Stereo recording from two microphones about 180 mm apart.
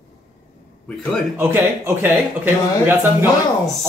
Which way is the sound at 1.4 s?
10° right (ahead or behind).